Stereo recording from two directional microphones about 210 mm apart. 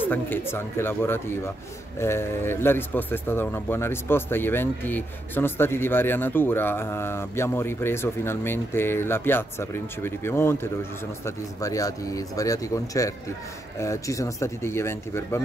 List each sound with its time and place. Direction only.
0.0 s speech: 10° left (ahead or behind)